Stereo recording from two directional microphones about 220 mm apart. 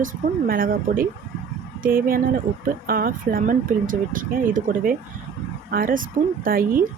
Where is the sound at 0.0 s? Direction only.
40° right (ahead or behind).